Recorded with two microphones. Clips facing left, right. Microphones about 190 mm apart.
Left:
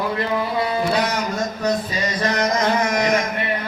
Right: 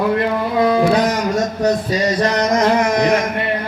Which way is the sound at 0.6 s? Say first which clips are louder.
Right 12 dB; 60° right (ahead or behind).